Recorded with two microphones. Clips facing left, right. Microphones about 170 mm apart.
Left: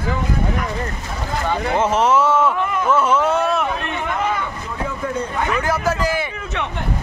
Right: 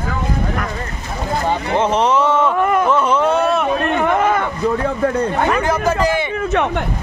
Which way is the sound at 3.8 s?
55° right (ahead or behind).